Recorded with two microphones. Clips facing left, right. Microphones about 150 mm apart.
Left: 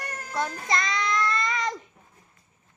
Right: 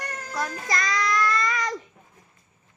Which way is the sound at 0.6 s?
25° left (ahead or behind).